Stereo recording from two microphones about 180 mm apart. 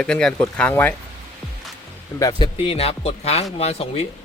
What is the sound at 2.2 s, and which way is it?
Speech, 25° left (ahead or behind).